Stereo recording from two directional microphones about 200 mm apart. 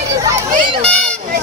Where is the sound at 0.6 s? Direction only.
25° right (ahead or behind).